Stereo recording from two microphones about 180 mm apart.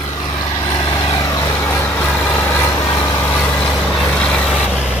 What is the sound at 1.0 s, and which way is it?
Vehicle, 20° left (ahead or behind).